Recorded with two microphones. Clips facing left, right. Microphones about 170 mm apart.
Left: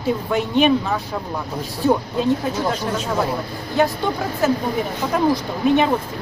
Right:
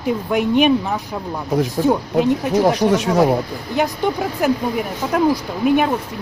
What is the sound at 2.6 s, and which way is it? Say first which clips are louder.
Speech: right 7 dB; 80° right.